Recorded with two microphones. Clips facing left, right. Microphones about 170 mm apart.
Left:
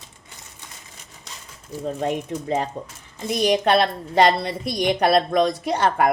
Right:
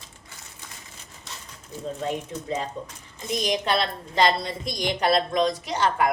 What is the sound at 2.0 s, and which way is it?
A woman's voice, 60° left (ahead or behind).